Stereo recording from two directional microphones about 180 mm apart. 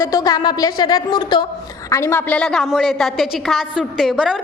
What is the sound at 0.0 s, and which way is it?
A woman's voice, 20° left (ahead or behind).